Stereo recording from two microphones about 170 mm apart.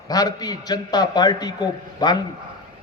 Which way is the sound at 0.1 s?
20° left (ahead or behind).